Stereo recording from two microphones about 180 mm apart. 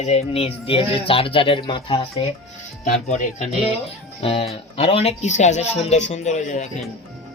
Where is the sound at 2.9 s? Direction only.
40° left (ahead or behind).